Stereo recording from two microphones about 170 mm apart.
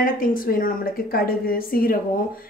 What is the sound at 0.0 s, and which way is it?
A woman's voice, 55° left (ahead or behind).